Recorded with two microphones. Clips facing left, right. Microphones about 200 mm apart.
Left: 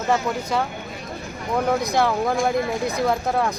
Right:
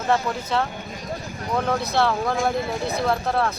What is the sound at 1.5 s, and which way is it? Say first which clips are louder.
Speech: left 2 dB; 10° left (ahead or behind).